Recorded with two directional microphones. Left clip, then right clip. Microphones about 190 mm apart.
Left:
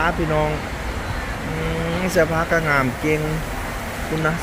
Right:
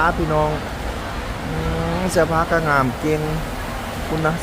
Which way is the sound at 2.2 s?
5° right (ahead or behind).